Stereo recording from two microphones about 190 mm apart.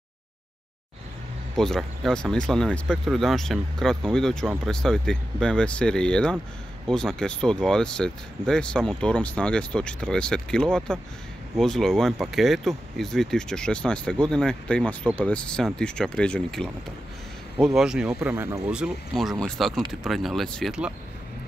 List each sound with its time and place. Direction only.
1.6 s speech: centre (ahead or behind)
17.7 s speech: 5° right (ahead or behind)